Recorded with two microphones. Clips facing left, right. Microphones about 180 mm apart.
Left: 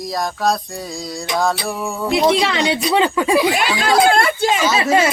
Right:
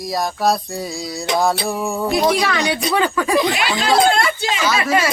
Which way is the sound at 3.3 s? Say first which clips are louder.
Left 2 dB; 5° left (ahead or behind).